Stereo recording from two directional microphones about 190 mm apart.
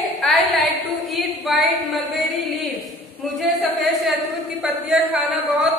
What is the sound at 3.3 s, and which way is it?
A woman's voice, centre (ahead or behind).